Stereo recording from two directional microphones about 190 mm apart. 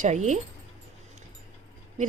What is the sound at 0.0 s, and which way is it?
Speech, 40° right (ahead or behind).